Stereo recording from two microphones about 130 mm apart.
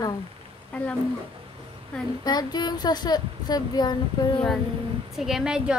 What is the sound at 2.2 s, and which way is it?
Speech, 30° left (ahead or behind).